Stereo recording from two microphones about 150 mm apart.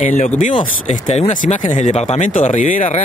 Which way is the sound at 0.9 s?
55° left (ahead or behind).